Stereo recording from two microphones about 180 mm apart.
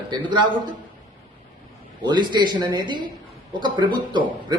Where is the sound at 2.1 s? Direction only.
25° right (ahead or behind).